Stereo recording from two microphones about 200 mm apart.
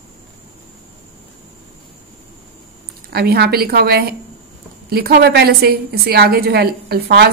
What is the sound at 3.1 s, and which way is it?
A woman's voice, 55° right (ahead or behind).